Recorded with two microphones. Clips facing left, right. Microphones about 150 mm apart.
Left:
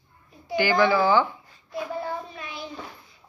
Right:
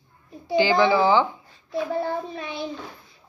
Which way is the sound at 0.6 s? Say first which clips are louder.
Right 2 dB; 20° right (ahead or behind).